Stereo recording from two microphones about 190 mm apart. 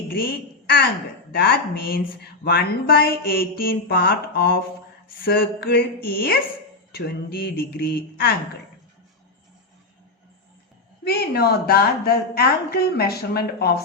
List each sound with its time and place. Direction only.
1.3 s speech: 55° left (ahead or behind)
11.0 s speech: 55° left (ahead or behind)